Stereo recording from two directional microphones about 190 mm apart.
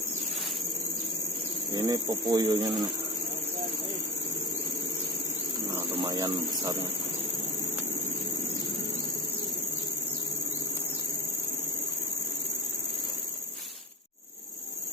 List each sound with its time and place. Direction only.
1.7 s speech: 15° right (ahead or behind)
6.0 s speech: 20° right (ahead or behind)